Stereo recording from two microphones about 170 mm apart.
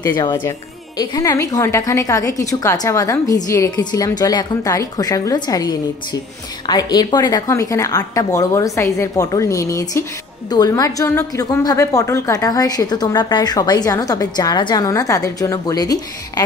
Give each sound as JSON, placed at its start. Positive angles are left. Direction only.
{"t": 0.0, "sound": "a woman's voice", "side_deg": 25}